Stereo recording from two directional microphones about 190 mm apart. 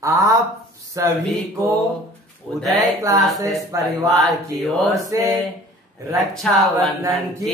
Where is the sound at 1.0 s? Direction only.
15° right (ahead or behind).